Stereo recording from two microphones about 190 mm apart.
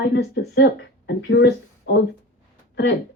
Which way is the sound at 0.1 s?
60° left (ahead or behind).